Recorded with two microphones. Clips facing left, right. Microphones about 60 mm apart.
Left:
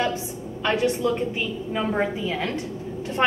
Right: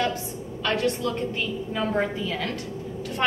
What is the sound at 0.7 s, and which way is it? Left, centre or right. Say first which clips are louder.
A woman's voice: left 3 dB; centre.